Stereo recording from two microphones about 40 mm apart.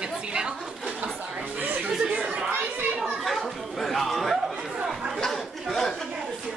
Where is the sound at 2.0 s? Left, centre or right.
Right.